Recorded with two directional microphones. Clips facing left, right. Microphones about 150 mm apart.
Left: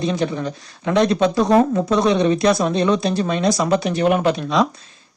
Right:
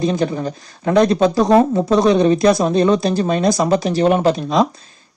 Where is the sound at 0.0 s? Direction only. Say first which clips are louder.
Right 3 dB; 40° right (ahead or behind).